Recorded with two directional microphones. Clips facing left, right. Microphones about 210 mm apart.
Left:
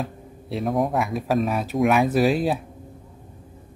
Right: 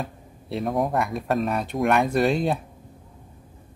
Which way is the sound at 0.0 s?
Centre (ahead or behind).